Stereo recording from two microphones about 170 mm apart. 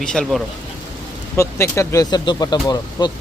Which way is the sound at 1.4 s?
15° left (ahead or behind).